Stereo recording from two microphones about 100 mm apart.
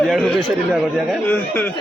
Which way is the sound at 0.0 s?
Centre (ahead or behind).